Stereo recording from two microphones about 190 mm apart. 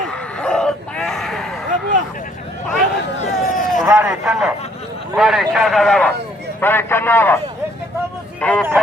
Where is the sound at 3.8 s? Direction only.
15° right (ahead or behind); by 7.4 s 10° left (ahead or behind).